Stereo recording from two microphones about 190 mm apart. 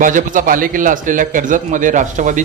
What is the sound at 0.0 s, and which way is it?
A man's voice, 45° right (ahead or behind).